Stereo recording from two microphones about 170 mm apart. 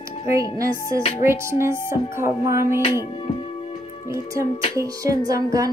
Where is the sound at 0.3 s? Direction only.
20° right (ahead or behind).